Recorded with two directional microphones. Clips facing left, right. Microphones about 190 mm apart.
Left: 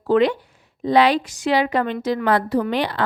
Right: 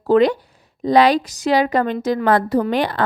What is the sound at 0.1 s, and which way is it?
A woman's voice, 40° right (ahead or behind).